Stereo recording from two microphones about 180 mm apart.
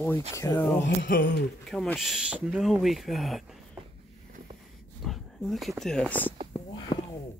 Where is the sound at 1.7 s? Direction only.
Centre (ahead or behind).